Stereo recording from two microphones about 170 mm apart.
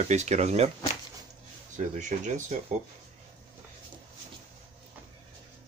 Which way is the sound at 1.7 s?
45° right (ahead or behind).